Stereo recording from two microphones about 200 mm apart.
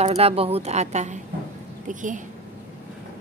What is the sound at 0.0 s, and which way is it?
A woman's voice, 30° right (ahead or behind).